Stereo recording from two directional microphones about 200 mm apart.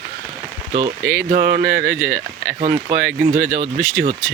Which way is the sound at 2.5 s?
35° right (ahead or behind).